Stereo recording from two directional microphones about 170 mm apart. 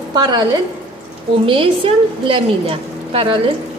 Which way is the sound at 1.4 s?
30° right (ahead or behind).